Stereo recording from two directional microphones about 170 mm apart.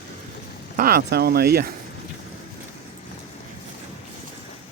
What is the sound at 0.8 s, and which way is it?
Speech, 65° right (ahead or behind).